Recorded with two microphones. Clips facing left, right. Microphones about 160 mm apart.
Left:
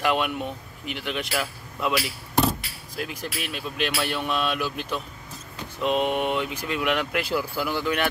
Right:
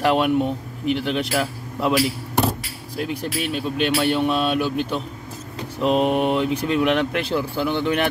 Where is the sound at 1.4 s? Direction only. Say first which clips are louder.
Right 5 dB; 35° right (ahead or behind).